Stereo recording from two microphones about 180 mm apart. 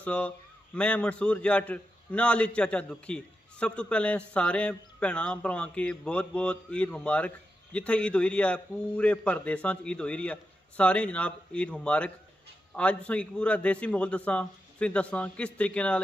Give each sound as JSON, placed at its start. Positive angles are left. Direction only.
{"t": 0.0, "sound": "a man's voice", "side_deg": 5}